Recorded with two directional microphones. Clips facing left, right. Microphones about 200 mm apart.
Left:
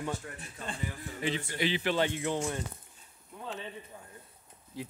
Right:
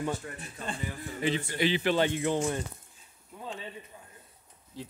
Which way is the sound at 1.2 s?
35° right (ahead or behind).